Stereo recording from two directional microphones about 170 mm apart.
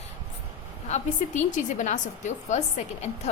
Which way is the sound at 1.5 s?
45° left (ahead or behind).